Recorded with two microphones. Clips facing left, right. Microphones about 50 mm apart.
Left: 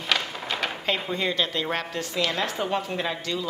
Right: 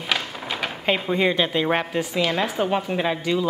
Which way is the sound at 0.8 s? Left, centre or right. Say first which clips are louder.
Right 8 dB; centre.